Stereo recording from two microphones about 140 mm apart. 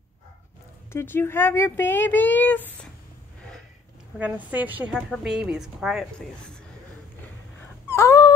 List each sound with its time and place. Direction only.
0.9 s speech: 15° left (ahead or behind)
4.2 s a woman's voice: 10° right (ahead or behind); by 6.6 s 5° left (ahead or behind)
7.8 s cat: 20° left (ahead or behind)